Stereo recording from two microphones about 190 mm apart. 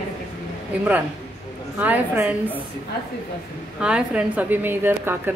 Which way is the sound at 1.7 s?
10° right (ahead or behind).